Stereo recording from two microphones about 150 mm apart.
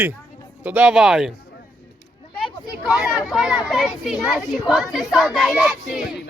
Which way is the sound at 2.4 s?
Centre (ahead or behind).